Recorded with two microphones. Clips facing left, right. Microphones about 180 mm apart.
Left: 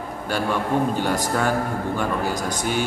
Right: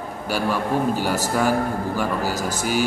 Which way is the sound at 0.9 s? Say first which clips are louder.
Even; 5° right (ahead or behind).